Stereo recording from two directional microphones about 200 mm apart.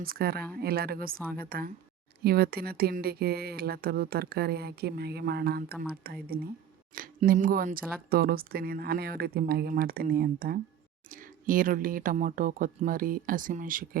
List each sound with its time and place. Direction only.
0.0 s speech: 50° right (ahead or behind)